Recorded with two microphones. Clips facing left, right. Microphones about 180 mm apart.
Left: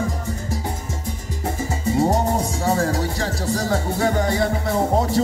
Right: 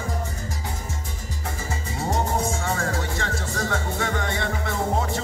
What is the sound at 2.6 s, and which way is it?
Music, 35° left (ahead or behind).